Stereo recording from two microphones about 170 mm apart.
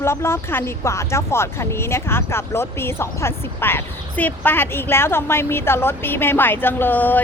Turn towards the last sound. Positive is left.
turn(degrees=10)  # may be behind; listen again after turning